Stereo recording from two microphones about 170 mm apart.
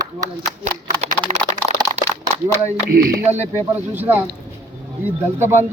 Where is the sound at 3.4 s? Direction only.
10° right (ahead or behind).